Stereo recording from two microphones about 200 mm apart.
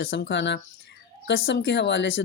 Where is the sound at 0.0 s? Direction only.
60° left (ahead or behind).